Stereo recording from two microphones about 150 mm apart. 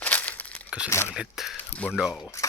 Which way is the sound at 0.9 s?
15° left (ahead or behind).